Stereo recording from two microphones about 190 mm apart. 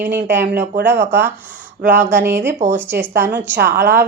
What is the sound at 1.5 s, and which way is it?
Speech, 45° right (ahead or behind).